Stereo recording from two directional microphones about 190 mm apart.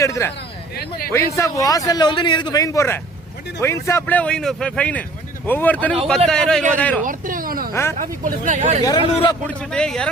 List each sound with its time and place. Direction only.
0.0 s a man's voice: 15° left (ahead or behind)
0.8 s a man's voice: 50° left (ahead or behind)
1.1 s a man's voice: 15° left (ahead or behind)
7.0 s a sound: 45° right (ahead or behind)
7.7 s speech: 15° left (ahead or behind)
7.9 s speech: 40° right (ahead or behind)
8.8 s speech: 20° left (ahead or behind)
9.5 s a man's voice: 5° left (ahead or behind)